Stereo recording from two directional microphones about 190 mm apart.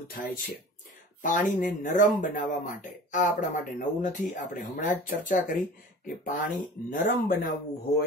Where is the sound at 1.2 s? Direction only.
40° left (ahead or behind).